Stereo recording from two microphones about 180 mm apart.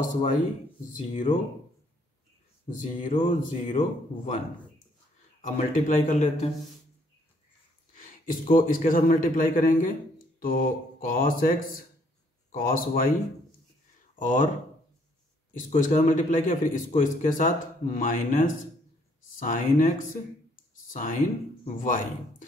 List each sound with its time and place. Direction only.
0.1 s a man's voice: 45° left (ahead or behind)
2.7 s a man's voice: 45° left (ahead or behind)
5.4 s a man's voice: 45° left (ahead or behind)
7.9 s a man's voice: 50° left (ahead or behind)
14.1 s speech: 45° left (ahead or behind)
15.5 s a man's voice: 45° left (ahead or behind)
20.7 s a sound: 45° left (ahead or behind)
21.6 s a man's voice: 45° left (ahead or behind)